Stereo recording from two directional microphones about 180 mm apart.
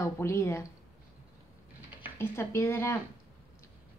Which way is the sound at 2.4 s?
15° left (ahead or behind).